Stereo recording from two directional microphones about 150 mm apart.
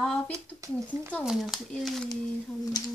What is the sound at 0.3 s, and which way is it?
Speech, 20° right (ahead or behind).